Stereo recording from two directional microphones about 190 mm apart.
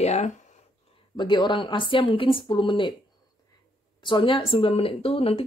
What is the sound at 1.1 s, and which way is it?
Speech, 25° left (ahead or behind).